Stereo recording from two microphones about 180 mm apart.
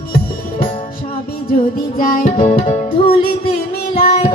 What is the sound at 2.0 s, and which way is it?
Music, 50° left (ahead or behind).